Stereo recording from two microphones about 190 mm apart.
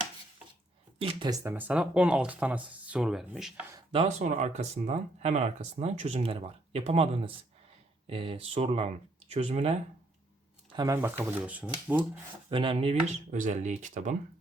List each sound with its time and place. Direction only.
0.9 s speech: 25° right (ahead or behind)
1.5 s speech: 10° right (ahead or behind)
3.9 s speech: 40° right (ahead or behind); by 10.9 s 25° right (ahead or behind)
11.2 s speech: 10° right (ahead or behind)
12.5 s speech: 25° right (ahead or behind)